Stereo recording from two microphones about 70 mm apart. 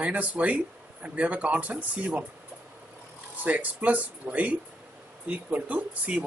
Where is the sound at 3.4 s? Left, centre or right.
Right.